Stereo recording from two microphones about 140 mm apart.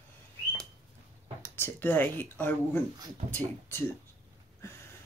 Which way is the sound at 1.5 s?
15° left (ahead or behind).